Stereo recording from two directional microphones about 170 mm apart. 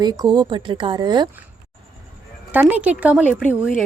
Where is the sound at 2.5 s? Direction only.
10° right (ahead or behind).